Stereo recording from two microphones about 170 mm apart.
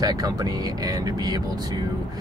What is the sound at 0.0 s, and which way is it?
Speech, 20° right (ahead or behind).